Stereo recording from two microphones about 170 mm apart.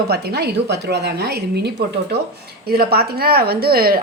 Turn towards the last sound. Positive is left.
turn(degrees=-60)  # may be behind; listen again after turning